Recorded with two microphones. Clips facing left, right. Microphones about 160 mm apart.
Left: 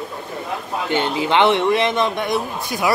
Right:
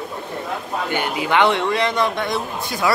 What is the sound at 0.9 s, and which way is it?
Speech, 25° left (ahead or behind).